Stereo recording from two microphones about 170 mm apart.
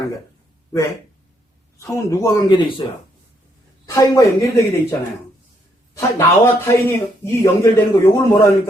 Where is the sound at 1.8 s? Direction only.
20° left (ahead or behind).